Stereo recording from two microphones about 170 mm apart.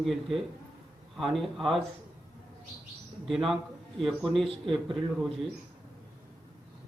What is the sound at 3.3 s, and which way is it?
A man's voice, centre (ahead or behind).